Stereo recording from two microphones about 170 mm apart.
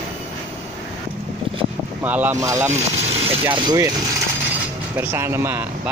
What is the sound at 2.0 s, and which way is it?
Speech, 10° right (ahead or behind).